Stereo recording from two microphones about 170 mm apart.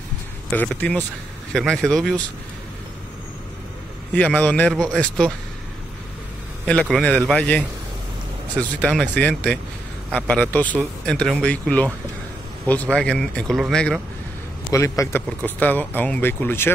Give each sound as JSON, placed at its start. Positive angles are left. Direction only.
{"t": 0.5, "sound": "speech", "side_deg": 10}
{"t": 4.1, "sound": "speech", "side_deg": 10}
{"t": 6.9, "sound": "speech", "side_deg": 0}
{"t": 14.7, "sound": "speech", "side_deg": 15}